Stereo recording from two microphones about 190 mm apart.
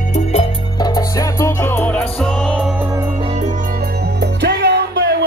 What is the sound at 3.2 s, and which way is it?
Music, 35° right (ahead or behind).